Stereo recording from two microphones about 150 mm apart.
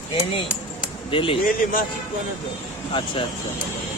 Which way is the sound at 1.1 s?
35° left (ahead or behind).